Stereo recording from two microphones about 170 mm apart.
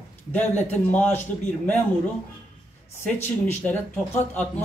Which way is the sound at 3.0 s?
15° left (ahead or behind).